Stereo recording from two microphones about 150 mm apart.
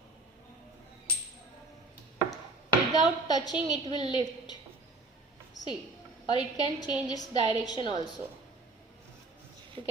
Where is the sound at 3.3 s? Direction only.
25° left (ahead or behind).